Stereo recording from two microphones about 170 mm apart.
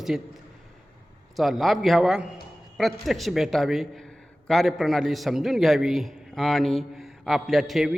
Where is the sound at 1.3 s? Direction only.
Centre (ahead or behind).